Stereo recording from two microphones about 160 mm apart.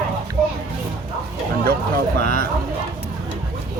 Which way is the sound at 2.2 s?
60° right (ahead or behind).